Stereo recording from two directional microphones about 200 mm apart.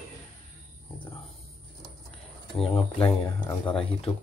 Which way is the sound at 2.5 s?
25° left (ahead or behind).